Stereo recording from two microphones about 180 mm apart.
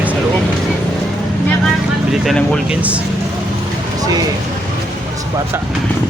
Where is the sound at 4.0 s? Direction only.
20° right (ahead or behind).